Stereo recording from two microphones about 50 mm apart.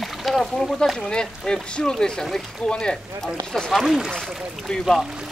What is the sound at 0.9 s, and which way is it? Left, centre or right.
Speech, centre.